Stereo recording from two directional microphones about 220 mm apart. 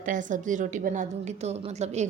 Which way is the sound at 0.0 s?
35° right (ahead or behind).